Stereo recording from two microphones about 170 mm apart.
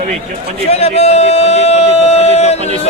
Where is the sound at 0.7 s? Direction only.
40° left (ahead or behind).